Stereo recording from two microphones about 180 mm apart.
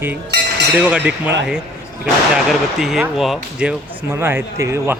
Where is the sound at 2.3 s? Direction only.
Centre (ahead or behind).